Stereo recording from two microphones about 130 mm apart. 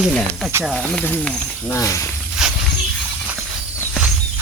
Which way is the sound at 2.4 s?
5° right (ahead or behind).